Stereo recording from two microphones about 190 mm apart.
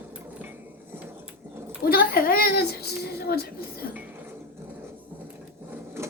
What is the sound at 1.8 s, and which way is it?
Speech, 50° left (ahead or behind).